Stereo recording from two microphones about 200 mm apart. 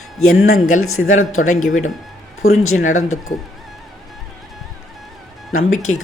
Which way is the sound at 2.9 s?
90° left.